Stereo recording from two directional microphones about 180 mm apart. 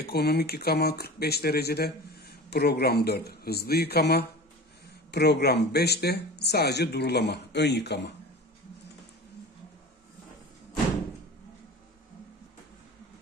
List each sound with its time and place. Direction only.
0.0 s speech: 65° left (ahead or behind)